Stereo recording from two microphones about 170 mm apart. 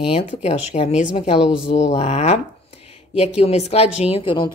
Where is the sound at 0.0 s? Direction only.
35° left (ahead or behind).